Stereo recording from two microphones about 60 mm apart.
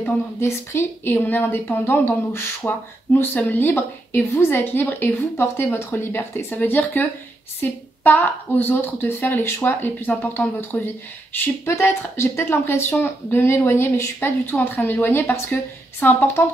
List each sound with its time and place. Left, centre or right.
0.0 s speech: left
1.1 s speech: left
4.3 s speech: left
4.6 s speech: left
11.7 s speech: left